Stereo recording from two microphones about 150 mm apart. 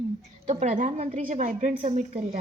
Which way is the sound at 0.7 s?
55° right (ahead or behind).